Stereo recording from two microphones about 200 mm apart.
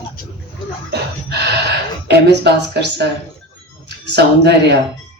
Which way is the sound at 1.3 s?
55° right (ahead or behind).